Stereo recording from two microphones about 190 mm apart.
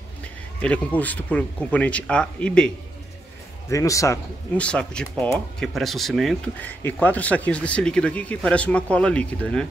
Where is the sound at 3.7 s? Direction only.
15° left (ahead or behind).